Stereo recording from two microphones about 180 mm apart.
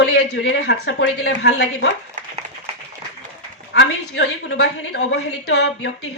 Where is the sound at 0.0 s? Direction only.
65° left (ahead or behind).